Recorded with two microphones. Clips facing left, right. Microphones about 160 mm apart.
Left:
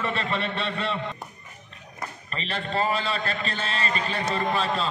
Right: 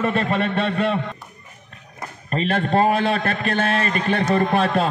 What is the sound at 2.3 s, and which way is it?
A man's voice, 50° right (ahead or behind).